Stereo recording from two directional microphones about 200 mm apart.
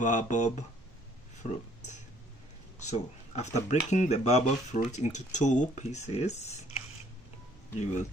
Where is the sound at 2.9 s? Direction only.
35° left (ahead or behind).